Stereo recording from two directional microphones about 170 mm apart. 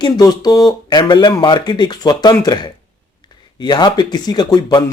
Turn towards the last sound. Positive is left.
turn(degrees=25)  # may be behind; listen again after turning